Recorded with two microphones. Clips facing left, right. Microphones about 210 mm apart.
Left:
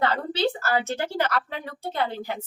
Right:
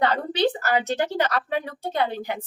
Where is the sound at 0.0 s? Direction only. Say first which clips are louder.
Right 2 dB; 20° right (ahead or behind).